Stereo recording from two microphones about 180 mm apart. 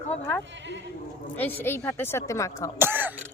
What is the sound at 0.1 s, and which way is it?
A woman's voice, 10° left (ahead or behind).